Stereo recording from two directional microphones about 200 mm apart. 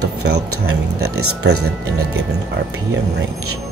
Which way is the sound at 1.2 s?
90° right.